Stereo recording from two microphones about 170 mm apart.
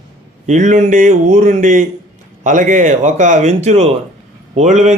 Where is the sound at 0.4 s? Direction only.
45° right (ahead or behind).